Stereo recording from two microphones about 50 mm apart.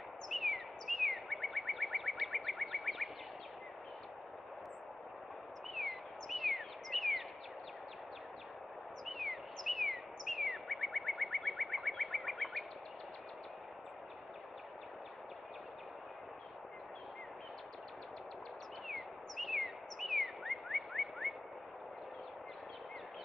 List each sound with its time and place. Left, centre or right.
0.3 s chirp: centre
5.8 s bird: centre
9.0 s bird: centre
18.9 s bird: centre